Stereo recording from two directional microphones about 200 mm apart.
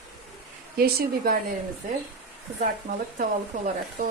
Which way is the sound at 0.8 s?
50° right (ahead or behind).